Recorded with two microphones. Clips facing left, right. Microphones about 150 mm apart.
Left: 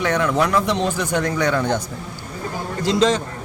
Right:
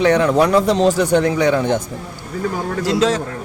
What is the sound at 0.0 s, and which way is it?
Speech, 30° right (ahead or behind).